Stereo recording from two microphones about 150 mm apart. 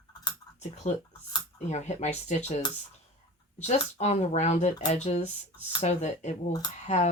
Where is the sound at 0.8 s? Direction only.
55° left (ahead or behind).